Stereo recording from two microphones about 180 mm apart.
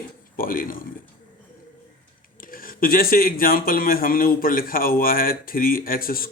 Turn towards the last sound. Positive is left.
turn(degrees=55)  # may be behind; listen again after turning